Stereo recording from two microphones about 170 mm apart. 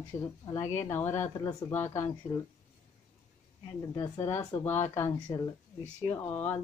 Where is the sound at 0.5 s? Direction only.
15° left (ahead or behind).